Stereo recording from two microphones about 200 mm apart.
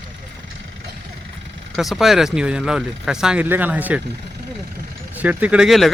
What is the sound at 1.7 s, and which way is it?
Speech, centre (ahead or behind).